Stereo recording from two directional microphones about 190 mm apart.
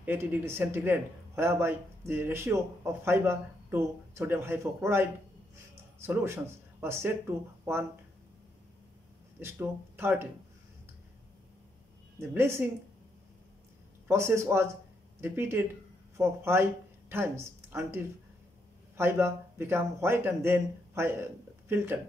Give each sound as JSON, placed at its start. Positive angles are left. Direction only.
{"t": 0.0, "sound": "speech", "side_deg": -10}
{"t": 6.0, "sound": "speech", "side_deg": -10}
{"t": 9.4, "sound": "speech", "side_deg": -10}
{"t": 12.2, "sound": "speech", "side_deg": -15}
{"t": 14.0, "sound": "speech", "side_deg": -15}